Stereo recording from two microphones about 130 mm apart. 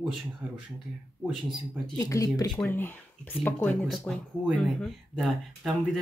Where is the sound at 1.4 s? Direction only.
Centre (ahead or behind).